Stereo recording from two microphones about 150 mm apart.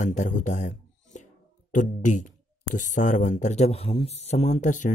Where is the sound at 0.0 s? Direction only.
55° left (ahead or behind).